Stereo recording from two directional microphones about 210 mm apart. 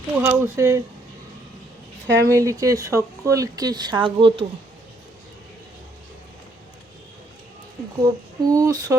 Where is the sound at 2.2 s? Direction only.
15° right (ahead or behind).